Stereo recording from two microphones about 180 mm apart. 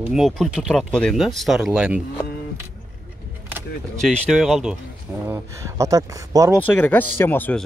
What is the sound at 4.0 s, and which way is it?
Speech, centre (ahead or behind).